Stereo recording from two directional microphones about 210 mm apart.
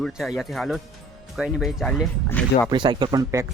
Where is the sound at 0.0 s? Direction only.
Centre (ahead or behind).